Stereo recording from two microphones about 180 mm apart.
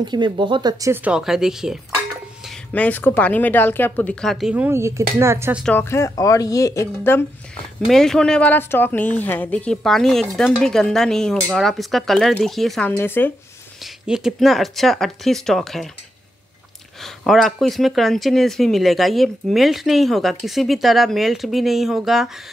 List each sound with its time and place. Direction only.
0.0 s speech: 25° right (ahead or behind); by 1.8 s 5° right (ahead or behind)
2.7 s speech: 10° left (ahead or behind); by 5.6 s 15° right (ahead or behind)
5.6 s speech: 10° left (ahead or behind)
7.8 s speech: centre (ahead or behind)
12.9 s speech: 10° left (ahead or behind)
14.0 s speech: 5° right (ahead or behind)
17.0 s speech: centre (ahead or behind)